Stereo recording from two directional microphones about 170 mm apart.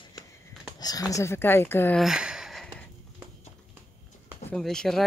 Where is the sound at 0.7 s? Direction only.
20° left (ahead or behind).